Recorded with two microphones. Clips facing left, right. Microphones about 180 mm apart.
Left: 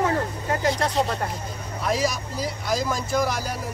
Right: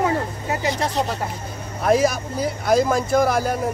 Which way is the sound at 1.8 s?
55° right (ahead or behind).